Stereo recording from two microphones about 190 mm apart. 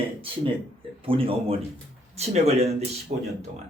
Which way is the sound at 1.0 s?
30° right (ahead or behind).